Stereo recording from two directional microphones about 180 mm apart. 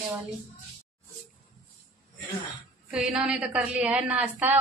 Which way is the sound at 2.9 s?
5° right (ahead or behind).